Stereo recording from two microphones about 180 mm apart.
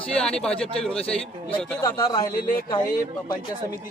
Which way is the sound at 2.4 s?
55° left (ahead or behind).